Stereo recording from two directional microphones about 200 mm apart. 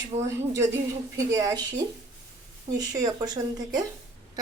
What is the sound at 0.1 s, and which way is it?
Speech, 30° right (ahead or behind).